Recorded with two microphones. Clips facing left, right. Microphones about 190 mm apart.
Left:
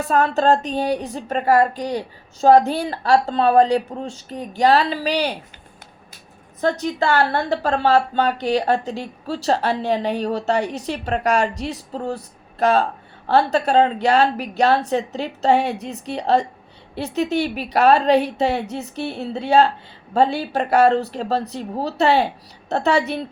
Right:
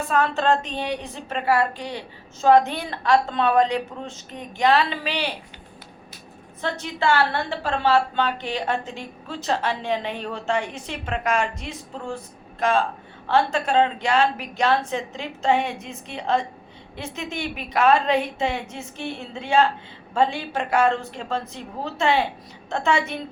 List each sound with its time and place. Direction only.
0.0 s a woman's voice: 40° left (ahead or behind)
6.6 s a woman's voice: 40° left (ahead or behind)